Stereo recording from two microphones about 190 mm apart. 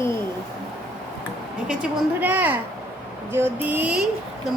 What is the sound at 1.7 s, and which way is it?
A woman's voice, 5° right (ahead or behind).